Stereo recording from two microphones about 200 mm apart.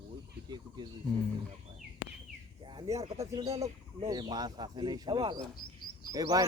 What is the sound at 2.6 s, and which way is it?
Speech, 25° right (ahead or behind).